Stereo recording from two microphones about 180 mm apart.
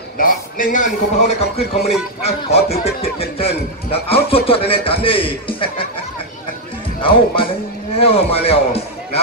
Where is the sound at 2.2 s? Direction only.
35° left (ahead or behind).